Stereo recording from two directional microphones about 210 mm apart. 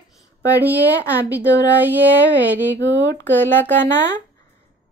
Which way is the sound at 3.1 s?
15° left (ahead or behind).